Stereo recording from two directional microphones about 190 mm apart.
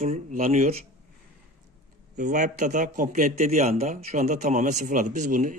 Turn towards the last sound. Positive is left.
turn(degrees=-45)  # may be behind; listen again after turning